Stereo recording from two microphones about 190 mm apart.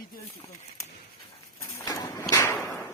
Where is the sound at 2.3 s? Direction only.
15° left (ahead or behind).